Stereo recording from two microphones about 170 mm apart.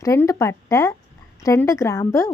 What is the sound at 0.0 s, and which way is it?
A woman's voice, 20° left (ahead or behind).